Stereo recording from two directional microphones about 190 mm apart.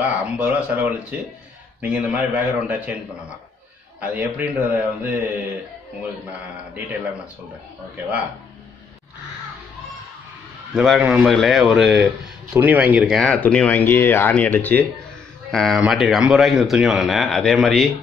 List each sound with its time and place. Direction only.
0.2 s a man's voice: 10° right (ahead or behind)
4.0 s a man's voice: 10° right (ahead or behind)
10.7 s speech: centre (ahead or behind)